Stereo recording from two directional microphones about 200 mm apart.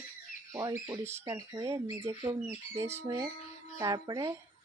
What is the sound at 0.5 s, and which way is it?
Speech, 15° right (ahead or behind).